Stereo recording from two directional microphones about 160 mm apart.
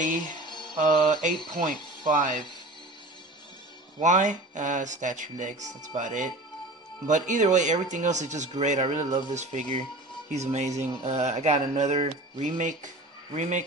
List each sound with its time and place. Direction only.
0.5 s music: 25° left (ahead or behind)
0.7 s speech: 50° right (ahead or behind)
4.0 s speech: 50° right (ahead or behind)